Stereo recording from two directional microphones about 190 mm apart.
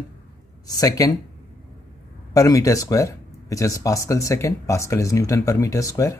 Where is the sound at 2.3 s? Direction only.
15° left (ahead or behind).